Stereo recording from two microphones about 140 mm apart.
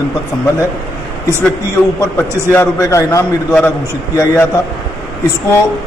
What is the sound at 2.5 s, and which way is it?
Speech, 20° left (ahead or behind).